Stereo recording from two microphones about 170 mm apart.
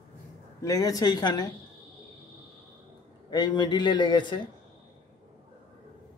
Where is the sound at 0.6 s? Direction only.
20° left (ahead or behind).